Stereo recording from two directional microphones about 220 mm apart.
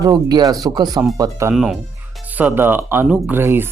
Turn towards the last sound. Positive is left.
turn(degrees=-10)  # may be behind; listen again after turning